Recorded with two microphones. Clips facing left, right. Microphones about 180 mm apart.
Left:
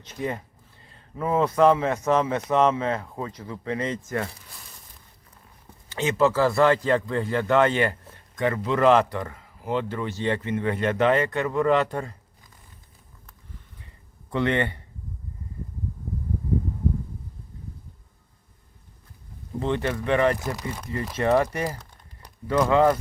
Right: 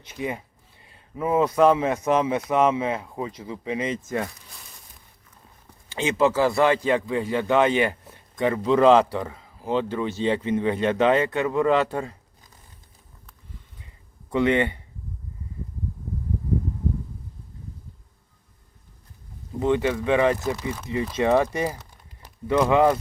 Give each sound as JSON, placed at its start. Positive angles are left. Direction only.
{"t": 0.0, "sound": "speech", "side_deg": -10}
{"t": 6.0, "sound": "speech", "side_deg": -20}
{"t": 14.3, "sound": "speech", "side_deg": -15}
{"t": 19.5, "sound": "speech", "side_deg": -10}